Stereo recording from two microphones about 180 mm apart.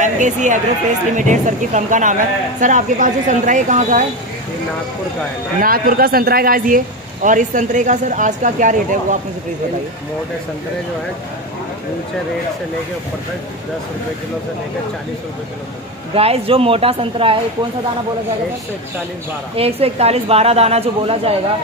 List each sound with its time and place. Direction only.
0.0 s speech: 45° right (ahead or behind)
5.6 s a man's voice: 55° right (ahead or behind)
16.2 s a woman's voice: 30° right (ahead or behind)
19.5 s a woman's voice: 35° right (ahead or behind)